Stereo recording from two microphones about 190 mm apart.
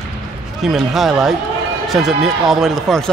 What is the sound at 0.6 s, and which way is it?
A man's voice, centre (ahead or behind).